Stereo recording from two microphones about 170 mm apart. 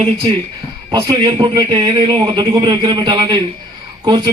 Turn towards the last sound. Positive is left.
turn(degrees=-25)  # may be behind; listen again after turning